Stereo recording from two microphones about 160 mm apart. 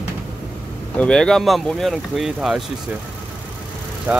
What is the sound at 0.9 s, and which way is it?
Speech, 5° left (ahead or behind).